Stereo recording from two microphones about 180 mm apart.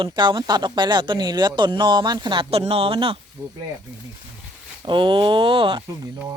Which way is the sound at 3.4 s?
20° right (ahead or behind).